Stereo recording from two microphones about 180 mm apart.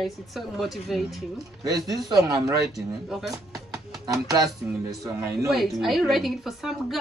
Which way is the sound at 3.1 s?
Centre (ahead or behind).